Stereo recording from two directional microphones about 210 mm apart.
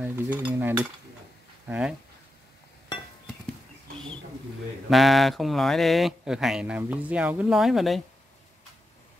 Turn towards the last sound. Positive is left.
turn(degrees=0)  # may be behind; listen again after turning